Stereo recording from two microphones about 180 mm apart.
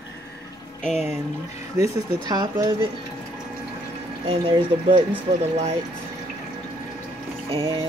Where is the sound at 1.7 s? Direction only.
20° right (ahead or behind).